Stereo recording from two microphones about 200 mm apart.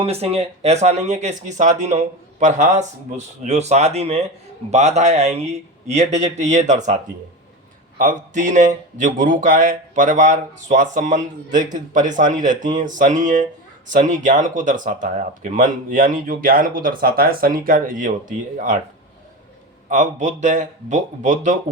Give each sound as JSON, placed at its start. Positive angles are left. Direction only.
{"t": 0.0, "sound": "speech", "side_deg": -30}
{"t": 7.9, "sound": "speech", "side_deg": -40}
{"t": 19.9, "sound": "speech", "side_deg": -40}